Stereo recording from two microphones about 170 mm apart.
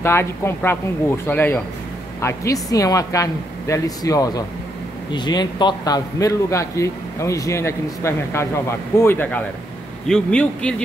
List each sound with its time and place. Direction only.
0.0 s a man's voice: 15° left (ahead or behind)